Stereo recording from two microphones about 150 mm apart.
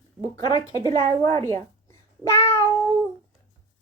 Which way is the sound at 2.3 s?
15° left (ahead or behind).